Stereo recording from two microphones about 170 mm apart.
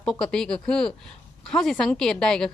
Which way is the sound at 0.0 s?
5° left (ahead or behind).